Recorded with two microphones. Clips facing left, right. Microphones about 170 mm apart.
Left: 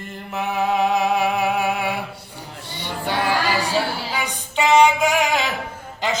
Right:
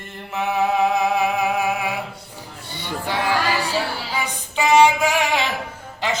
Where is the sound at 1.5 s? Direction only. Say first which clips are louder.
Even; centre (ahead or behind).